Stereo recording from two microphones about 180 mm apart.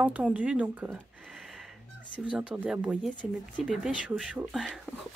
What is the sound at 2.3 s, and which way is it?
Speech, 5° right (ahead or behind).